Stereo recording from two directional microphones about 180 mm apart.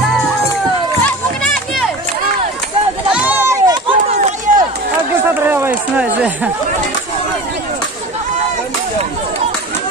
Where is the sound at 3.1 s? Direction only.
10° right (ahead or behind).